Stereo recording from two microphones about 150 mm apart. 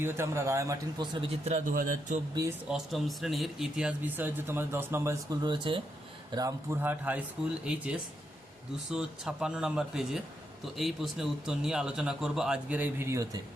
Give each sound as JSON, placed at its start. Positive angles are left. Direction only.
{"t": 0.0, "sound": "a man's voice", "side_deg": -15}
{"t": 1.5, "sound": "a man's voice", "side_deg": -60}
{"t": 2.6, "sound": "a man's voice", "side_deg": 0}
{"t": 6.8, "sound": "speech", "side_deg": -10}